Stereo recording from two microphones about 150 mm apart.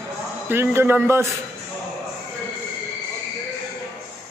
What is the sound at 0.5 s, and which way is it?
Speech, 15° right (ahead or behind).